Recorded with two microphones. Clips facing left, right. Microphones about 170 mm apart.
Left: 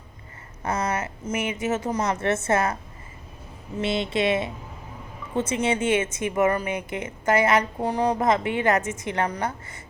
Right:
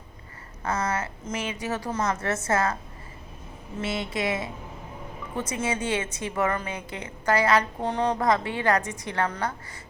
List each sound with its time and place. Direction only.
0.6 s a woman's voice: 25° left (ahead or behind)
1.2 s speech: 10° left (ahead or behind)
1.5 s a woman's voice: 20° left (ahead or behind)
2.3 s a woman's voice: 25° left (ahead or behind)
3.8 s a woman's voice: 20° left (ahead or behind)
7.8 s a woman's voice: 10° left (ahead or behind)